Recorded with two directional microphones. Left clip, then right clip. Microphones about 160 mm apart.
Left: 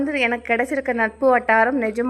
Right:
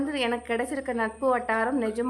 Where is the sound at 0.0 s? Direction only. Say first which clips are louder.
Left 7 dB; 25° left (ahead or behind).